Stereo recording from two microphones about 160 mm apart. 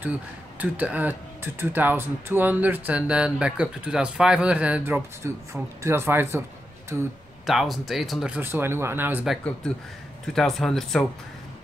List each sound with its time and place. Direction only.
0.0 s speech: 10° right (ahead or behind)
7.4 s speech: centre (ahead or behind)
8.4 s speech: 15° right (ahead or behind)
9.3 s speech: 5° left (ahead or behind)